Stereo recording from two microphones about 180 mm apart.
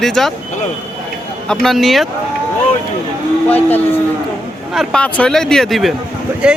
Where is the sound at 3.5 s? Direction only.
10° left (ahead or behind); by 6.6 s 5° right (ahead or behind).